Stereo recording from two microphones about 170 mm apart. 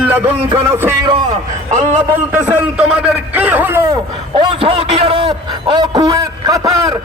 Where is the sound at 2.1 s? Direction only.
10° right (ahead or behind).